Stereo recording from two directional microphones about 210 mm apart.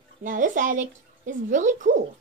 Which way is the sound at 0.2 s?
40° right (ahead or behind).